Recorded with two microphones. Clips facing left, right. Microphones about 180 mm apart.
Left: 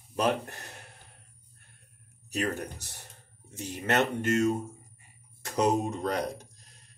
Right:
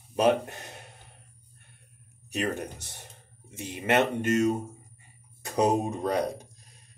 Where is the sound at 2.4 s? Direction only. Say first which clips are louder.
Right 1 dB; 15° right (ahead or behind).